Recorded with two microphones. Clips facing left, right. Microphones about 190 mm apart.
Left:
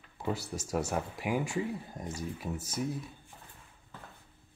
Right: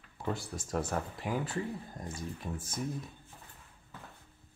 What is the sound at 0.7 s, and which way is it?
Speech, 10° left (ahead or behind).